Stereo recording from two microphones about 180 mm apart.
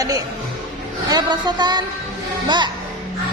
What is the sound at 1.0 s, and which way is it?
A woman's voice, 25° right (ahead or behind).